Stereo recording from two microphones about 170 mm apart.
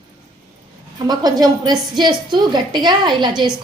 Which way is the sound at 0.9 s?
25° right (ahead or behind).